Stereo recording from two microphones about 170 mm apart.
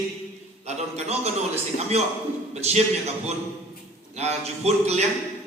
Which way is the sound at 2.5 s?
40° right (ahead or behind).